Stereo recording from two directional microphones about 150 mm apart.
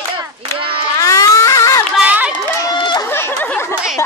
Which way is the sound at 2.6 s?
30° left (ahead or behind).